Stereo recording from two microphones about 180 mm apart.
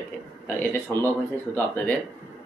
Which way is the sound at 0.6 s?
10° left (ahead or behind).